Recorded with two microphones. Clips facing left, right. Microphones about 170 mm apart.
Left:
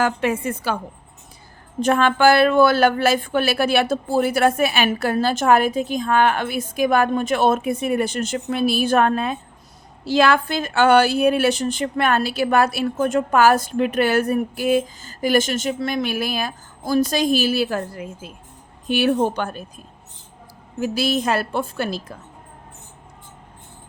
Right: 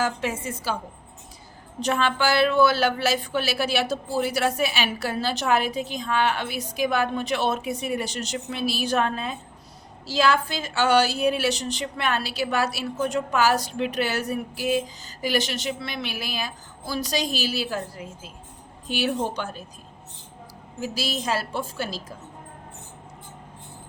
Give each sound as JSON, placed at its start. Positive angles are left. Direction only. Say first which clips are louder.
{"t": 0.0, "sound": "a woman's voice", "louder": "left 6 dB", "side_deg": 60}
{"t": 1.8, "sound": "a woman's voice", "louder": "left 7 dB", "side_deg": 55}
{"t": 20.8, "sound": "a woman's voice", "louder": "left 7 dB", "side_deg": 55}